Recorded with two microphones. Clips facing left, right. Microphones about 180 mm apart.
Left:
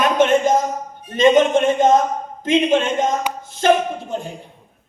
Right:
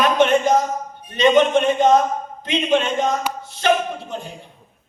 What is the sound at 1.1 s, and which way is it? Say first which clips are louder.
Speech: left 2 dB; 45° left (ahead or behind).